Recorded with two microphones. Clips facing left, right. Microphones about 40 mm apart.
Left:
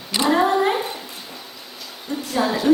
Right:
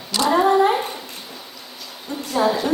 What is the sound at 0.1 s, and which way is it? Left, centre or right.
Cat, centre.